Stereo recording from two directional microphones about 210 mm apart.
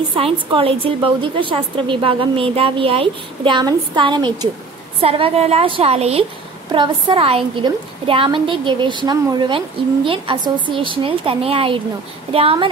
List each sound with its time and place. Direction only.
0.1 s a woman's voice: 25° right (ahead or behind)